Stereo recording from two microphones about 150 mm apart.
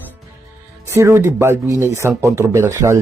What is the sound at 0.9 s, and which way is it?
Speech, 15° right (ahead or behind).